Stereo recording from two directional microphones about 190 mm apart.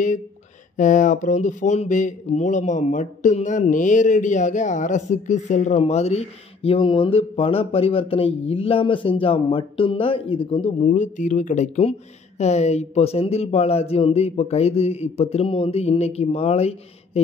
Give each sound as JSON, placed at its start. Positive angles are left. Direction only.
{"t": 0.7, "sound": "speech", "side_deg": 40}